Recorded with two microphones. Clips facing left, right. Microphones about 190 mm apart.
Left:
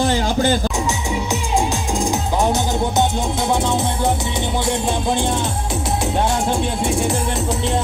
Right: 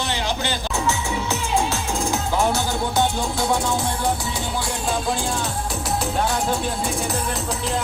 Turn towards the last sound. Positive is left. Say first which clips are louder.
# left 5 dB
turn(degrees=25)  # may be behind; listen again after turning